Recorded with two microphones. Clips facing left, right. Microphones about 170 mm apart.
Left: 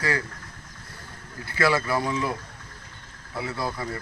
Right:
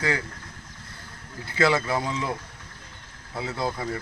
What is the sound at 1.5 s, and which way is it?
Speech, 20° right (ahead or behind).